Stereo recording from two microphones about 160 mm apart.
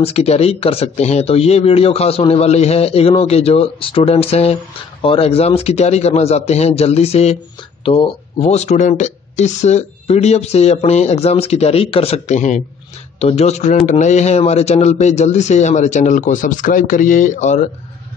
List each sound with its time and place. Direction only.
0.0 s a man's voice: 40° left (ahead or behind)